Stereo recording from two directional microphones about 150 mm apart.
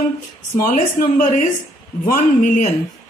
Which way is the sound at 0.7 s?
70° left (ahead or behind).